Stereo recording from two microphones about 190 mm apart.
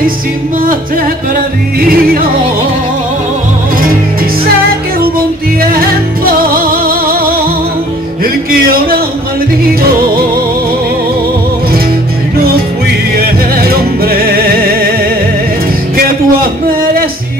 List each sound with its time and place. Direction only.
1.8 s music: 50° right (ahead or behind)
6.2 s music: 50° right (ahead or behind)
13.1 s music: 50° right (ahead or behind)
16.0 s a sound: 50° right (ahead or behind)